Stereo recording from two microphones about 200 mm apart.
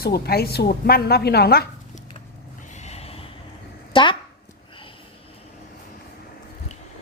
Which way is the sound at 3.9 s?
25° left (ahead or behind).